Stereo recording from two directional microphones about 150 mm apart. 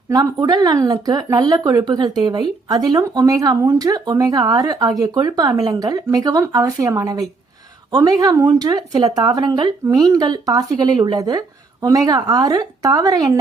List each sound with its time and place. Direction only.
0.1 s speech: 25° right (ahead or behind)